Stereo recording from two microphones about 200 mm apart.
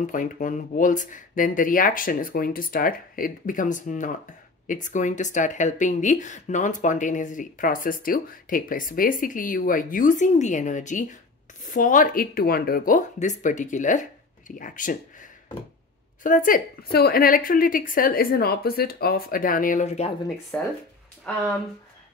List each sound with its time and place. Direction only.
0.0 s speech: 40° left (ahead or behind)
20.5 s speech: 10° left (ahead or behind)